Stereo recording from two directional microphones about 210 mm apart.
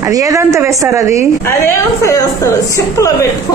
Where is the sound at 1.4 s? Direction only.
15° left (ahead or behind).